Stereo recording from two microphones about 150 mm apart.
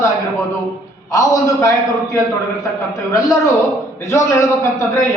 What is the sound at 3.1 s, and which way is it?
A man's voice, 20° left (ahead or behind).